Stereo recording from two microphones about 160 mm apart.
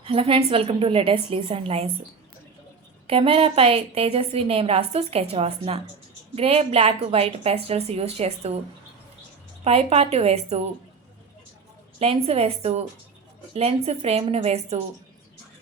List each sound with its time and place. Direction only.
0.0 s a woman's voice: 35° right (ahead or behind)
3.1 s a woman's voice: 35° right (ahead or behind)
9.6 s a woman's voice: 40° right (ahead or behind)
11.9 s a woman's voice: 40° right (ahead or behind)